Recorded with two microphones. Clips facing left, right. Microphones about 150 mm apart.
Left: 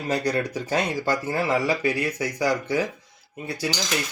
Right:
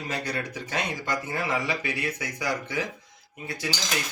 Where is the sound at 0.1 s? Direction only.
35° left (ahead or behind).